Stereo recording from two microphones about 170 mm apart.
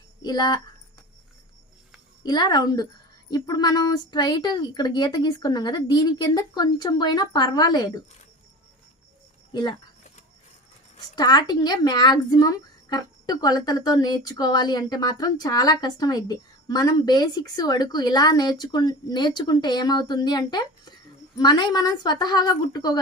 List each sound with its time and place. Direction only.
0.2 s speech: 25° left (ahead or behind)
2.2 s speech: 25° left (ahead or behind)
9.5 s speech: 25° left (ahead or behind)
11.1 s speech: 25° left (ahead or behind)